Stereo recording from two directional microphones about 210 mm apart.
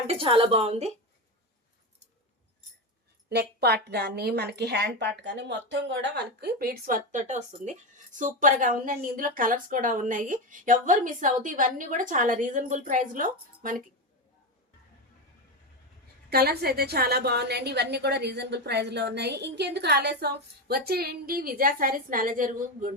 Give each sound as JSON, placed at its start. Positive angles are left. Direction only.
{"t": 0.1, "sound": "a woman's voice", "side_deg": -25}
{"t": 3.2, "sound": "a woman's voice", "side_deg": -50}
{"t": 16.3, "sound": "a woman's voice", "side_deg": -50}